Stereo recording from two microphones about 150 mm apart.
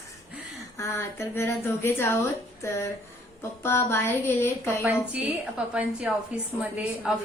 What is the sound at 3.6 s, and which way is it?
A woman's voice, 15° left (ahead or behind).